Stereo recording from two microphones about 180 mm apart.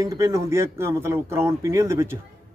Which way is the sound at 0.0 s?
20° right (ahead or behind).